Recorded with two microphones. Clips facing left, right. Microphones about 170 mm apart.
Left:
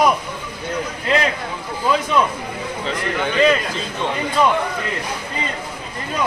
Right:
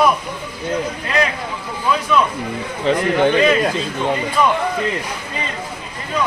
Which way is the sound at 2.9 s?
50° right (ahead or behind).